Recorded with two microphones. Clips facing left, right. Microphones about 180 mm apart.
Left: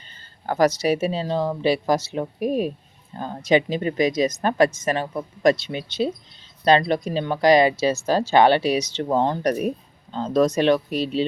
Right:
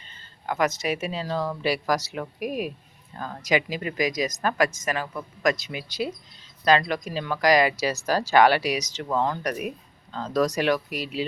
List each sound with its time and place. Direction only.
0.1 s speech: 35° left (ahead or behind)
10.1 s speech: 25° left (ahead or behind)